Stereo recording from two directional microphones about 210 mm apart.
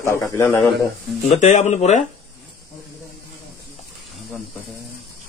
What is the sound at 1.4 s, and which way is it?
Speech, 35° left (ahead or behind).